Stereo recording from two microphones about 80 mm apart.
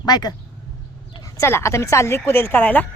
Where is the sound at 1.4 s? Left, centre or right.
Left.